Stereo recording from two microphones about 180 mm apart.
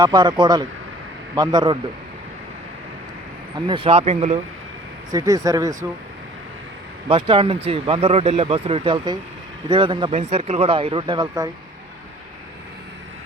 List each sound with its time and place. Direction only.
0.0 s speech: 25° right (ahead or behind)
3.7 s speech: 30° right (ahead or behind)
5.1 s speech: 20° right (ahead or behind)
7.1 s speech: 30° right (ahead or behind)